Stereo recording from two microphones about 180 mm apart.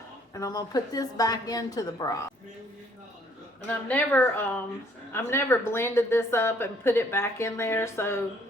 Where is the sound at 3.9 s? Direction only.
10° left (ahead or behind).